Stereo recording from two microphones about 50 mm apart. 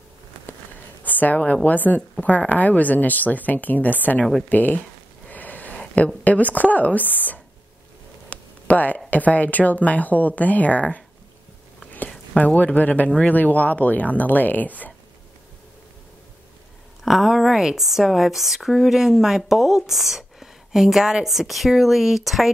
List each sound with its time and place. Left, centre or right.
1.0 s a sound: left
1.4 s speech: left
5.3 s sniff: left
6.2 s speech: left
12.4 s speech: left
17.0 s speech: centre